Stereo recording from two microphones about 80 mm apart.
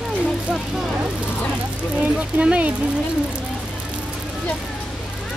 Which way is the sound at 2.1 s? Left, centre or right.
Centre.